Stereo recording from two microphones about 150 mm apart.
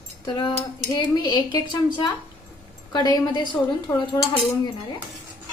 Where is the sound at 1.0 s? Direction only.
30° left (ahead or behind).